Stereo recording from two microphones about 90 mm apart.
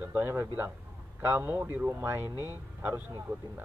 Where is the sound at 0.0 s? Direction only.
25° right (ahead or behind).